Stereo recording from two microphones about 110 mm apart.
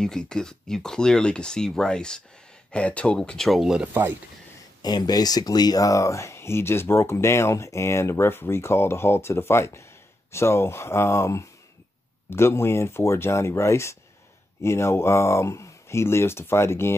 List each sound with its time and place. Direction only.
0.0 s speech: 5° left (ahead or behind)
4.8 s speech: 40° left (ahead or behind); by 16.9 s 20° left (ahead or behind)